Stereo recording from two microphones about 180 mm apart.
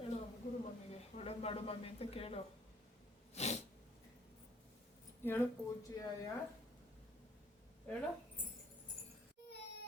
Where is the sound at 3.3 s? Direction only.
40° left (ahead or behind).